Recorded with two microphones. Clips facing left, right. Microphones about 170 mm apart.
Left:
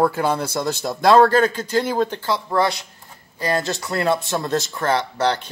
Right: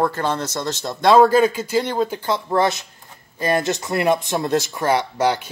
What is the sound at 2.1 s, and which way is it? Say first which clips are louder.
Speech: right 1 dB; 20° right (ahead or behind).